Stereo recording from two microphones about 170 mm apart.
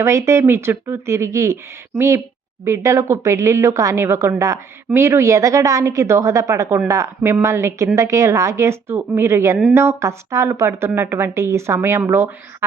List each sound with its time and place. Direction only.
0.0 s speech: 15° right (ahead or behind)